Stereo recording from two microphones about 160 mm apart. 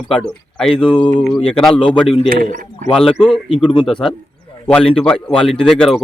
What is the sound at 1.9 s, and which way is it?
Speech, 5° left (ahead or behind).